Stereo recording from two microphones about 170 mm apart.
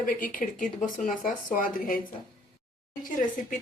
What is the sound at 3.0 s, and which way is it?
Speech, 50° left (ahead or behind).